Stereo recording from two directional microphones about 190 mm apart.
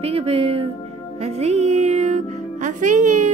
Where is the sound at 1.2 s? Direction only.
35° right (ahead or behind).